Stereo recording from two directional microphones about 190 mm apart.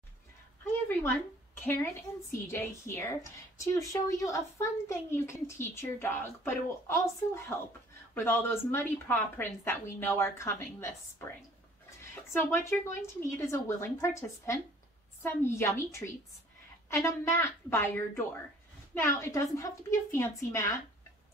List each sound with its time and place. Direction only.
1.6 s speech: 10° left (ahead or behind)